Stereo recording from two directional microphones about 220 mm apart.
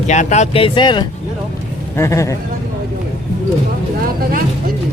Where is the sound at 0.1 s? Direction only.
30° left (ahead or behind); by 2.3 s 15° left (ahead or behind).